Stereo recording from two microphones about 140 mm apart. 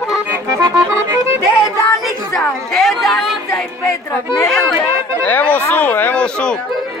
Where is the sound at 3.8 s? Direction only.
15° left (ahead or behind).